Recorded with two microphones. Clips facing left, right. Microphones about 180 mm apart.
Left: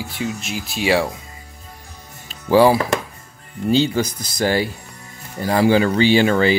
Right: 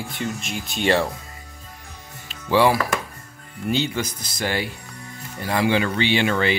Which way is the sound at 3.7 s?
35° left (ahead or behind).